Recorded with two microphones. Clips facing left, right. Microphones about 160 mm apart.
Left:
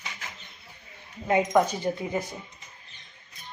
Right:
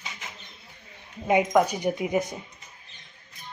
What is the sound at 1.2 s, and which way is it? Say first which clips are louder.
Speech: right 1 dB; 15° right (ahead or behind).